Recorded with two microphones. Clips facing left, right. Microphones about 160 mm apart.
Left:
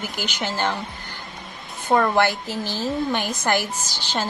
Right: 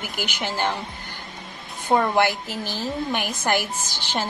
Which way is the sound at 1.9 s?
20° right (ahead or behind).